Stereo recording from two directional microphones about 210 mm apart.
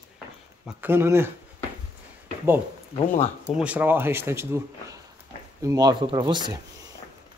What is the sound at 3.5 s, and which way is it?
Speech, 5° right (ahead or behind).